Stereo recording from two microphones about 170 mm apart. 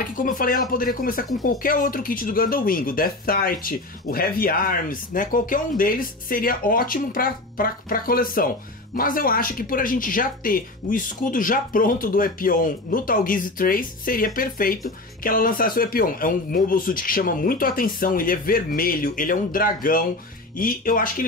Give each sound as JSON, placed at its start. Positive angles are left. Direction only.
{"t": 0.0, "sound": "speech", "side_deg": 50}